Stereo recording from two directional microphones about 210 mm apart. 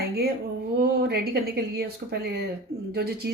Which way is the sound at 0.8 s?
50° right (ahead or behind).